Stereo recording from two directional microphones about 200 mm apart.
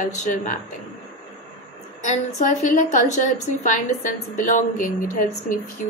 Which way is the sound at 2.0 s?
40° left (ahead or behind).